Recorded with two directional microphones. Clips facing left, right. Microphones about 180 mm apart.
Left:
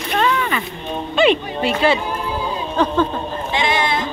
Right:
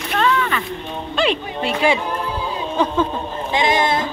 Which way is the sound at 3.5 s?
40° right (ahead or behind).